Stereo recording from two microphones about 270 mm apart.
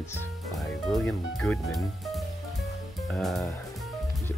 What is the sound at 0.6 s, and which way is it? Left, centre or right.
Speech, centre.